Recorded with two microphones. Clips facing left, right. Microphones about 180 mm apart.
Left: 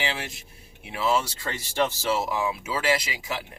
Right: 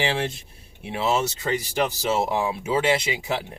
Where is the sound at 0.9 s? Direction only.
25° right (ahead or behind).